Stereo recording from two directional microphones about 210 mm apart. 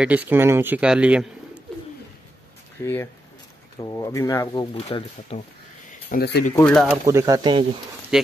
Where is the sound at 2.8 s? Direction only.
10° left (ahead or behind).